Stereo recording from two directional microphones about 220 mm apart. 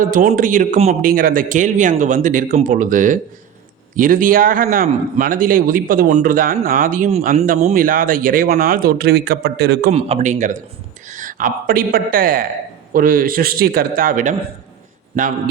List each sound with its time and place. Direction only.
0.0 s a man's voice: 35° right (ahead or behind)
9.9 s a man's voice: 30° right (ahead or behind)